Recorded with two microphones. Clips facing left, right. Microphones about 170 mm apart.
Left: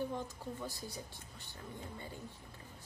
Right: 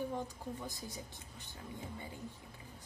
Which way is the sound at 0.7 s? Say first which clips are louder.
Even; 20° right (ahead or behind).